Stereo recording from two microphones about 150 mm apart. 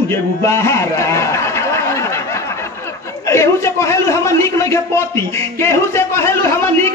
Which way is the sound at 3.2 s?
20° left (ahead or behind).